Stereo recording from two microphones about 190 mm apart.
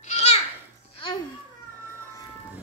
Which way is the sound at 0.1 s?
35° left (ahead or behind).